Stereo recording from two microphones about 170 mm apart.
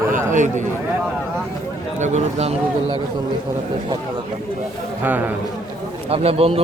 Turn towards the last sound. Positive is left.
turn(degrees=-35)  # may be behind; listen again after turning